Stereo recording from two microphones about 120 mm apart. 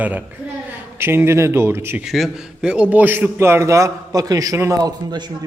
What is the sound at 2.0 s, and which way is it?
A man's voice, centre (ahead or behind).